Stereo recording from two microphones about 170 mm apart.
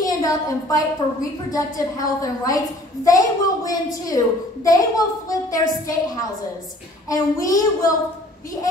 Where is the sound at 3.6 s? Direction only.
20° left (ahead or behind).